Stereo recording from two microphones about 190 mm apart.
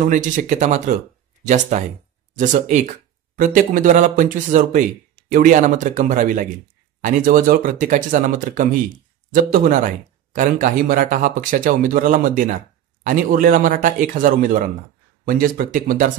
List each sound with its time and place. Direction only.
0.1 s speech: 40° right (ahead or behind)